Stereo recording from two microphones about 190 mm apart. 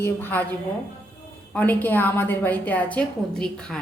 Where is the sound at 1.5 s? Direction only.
10° left (ahead or behind).